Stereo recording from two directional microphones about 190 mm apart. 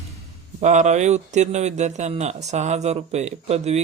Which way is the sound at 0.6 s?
40° right (ahead or behind).